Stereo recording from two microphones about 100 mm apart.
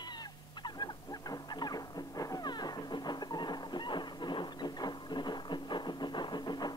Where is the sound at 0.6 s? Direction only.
45° left (ahead or behind).